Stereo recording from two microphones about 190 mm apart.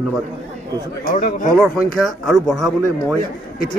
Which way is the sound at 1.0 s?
45° left (ahead or behind).